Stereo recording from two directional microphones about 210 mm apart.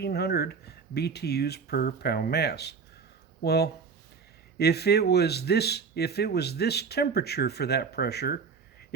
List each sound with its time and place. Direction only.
0.0 s speech: 50° left (ahead or behind)